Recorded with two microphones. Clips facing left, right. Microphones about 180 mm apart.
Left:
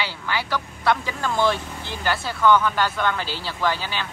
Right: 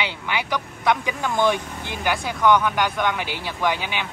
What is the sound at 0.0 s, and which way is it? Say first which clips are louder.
A woman's voice: right 1 dB; 20° right (ahead or behind).